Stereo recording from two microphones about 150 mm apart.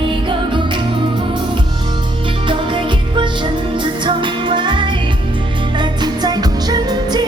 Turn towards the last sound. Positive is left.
turn(degrees=-30)  # may be behind; listen again after turning